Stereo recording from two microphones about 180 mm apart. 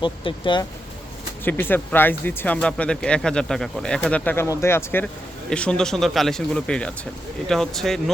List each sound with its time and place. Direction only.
0.0 s speech: 25° left (ahead or behind)
1.5 s speech: 10° left (ahead or behind)